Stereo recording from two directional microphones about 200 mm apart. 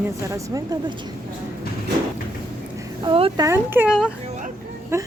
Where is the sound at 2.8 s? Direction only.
25° right (ahead or behind).